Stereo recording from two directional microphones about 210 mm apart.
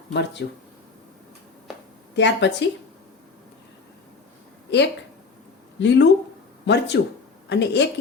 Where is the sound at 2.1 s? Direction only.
55° left (ahead or behind).